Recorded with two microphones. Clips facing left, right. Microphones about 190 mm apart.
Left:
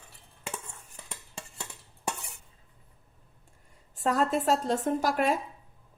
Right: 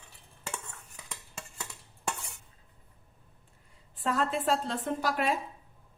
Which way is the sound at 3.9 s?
40° left (ahead or behind).